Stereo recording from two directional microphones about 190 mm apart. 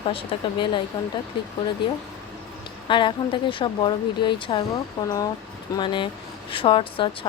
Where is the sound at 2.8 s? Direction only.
25° left (ahead or behind).